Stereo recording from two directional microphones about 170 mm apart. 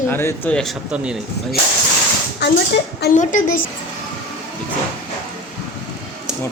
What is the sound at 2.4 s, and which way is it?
Speech, 90° left.